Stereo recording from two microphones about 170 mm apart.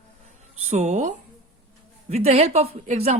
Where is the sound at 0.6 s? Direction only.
40° right (ahead or behind).